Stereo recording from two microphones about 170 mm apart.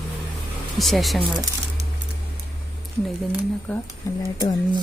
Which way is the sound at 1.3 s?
20° right (ahead or behind).